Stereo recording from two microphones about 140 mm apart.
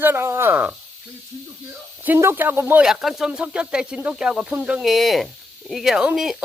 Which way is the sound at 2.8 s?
Centre (ahead or behind).